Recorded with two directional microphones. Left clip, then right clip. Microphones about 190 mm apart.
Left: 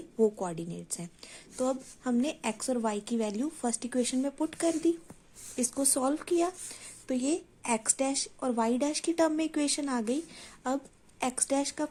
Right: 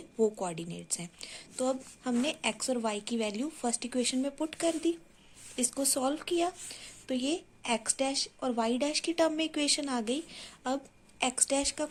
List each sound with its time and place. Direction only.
0.2 s a woman's voice: 50° left (ahead or behind)